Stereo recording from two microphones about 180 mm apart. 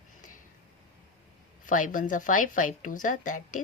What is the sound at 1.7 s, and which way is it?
A woman's voice, 45° left (ahead or behind).